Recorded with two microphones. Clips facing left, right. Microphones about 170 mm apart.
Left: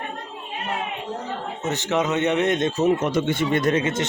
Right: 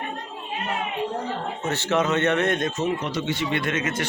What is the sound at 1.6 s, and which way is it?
Speech, 20° left (ahead or behind).